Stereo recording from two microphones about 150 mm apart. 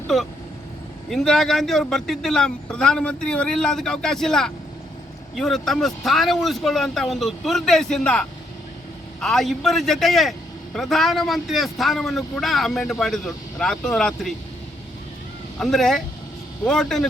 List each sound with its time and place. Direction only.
0.1 s a man's voice: centre (ahead or behind)
15.5 s a man's voice: centre (ahead or behind)